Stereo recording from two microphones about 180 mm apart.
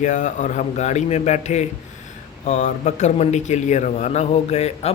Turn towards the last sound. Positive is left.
turn(degrees=35)  # may be behind; listen again after turning